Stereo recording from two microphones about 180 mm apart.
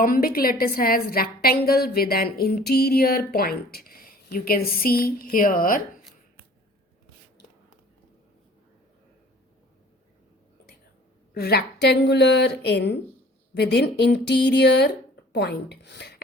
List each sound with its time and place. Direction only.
0.0 s a woman's voice: 55° left (ahead or behind)
11.3 s speech: 60° left (ahead or behind)